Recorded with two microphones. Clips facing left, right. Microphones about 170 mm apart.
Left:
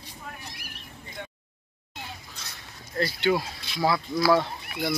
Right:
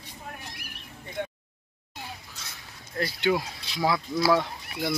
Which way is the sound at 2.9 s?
15° right (ahead or behind).